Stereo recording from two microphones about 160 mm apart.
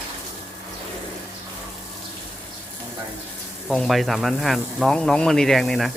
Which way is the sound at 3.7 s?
Centre (ahead or behind).